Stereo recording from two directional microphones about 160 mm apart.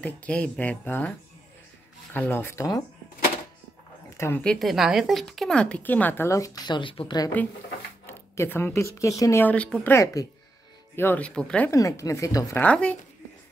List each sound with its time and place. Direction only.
0.0 s speech: 10° left (ahead or behind)
2.1 s speech: 10° left (ahead or behind)
4.2 s speech: 10° left (ahead or behind); by 7.2 s 30° left (ahead or behind)
8.1 s speech: 15° left (ahead or behind)
11.7 s speech: 20° left (ahead or behind)
12.6 s speech: 10° left (ahead or behind)